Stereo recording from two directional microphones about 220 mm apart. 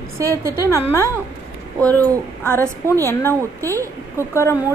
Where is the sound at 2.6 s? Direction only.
15° right (ahead or behind).